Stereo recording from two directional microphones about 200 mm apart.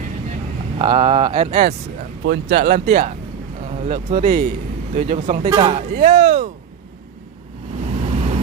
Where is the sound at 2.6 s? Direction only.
40° right (ahead or behind).